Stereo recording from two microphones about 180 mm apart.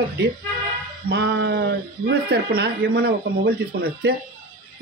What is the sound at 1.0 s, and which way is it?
Speech, 65° right (ahead or behind).